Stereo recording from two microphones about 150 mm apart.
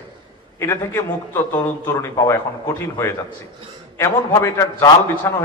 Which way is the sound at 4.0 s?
15° left (ahead or behind).